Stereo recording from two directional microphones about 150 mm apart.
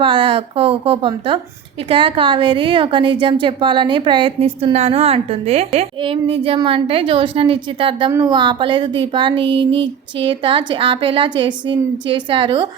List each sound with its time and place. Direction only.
0.0 s a woman's voice: 35° right (ahead or behind)